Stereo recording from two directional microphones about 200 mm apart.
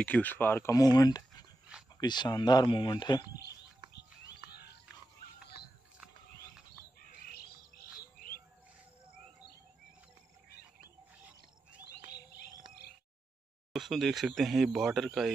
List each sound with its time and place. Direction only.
0.0 s speech: 10° left (ahead or behind)
4.5 s pig: 55° left (ahead or behind)
13.7 s speech: centre (ahead or behind)